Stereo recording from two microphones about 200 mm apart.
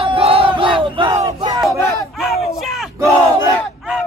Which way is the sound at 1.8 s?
15° left (ahead or behind).